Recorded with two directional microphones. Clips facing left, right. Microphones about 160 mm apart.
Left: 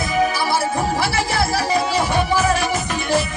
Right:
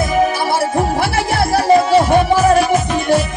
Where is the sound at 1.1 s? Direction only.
55° right (ahead or behind).